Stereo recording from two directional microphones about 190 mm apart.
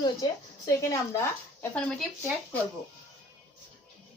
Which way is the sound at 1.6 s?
5° left (ahead or behind).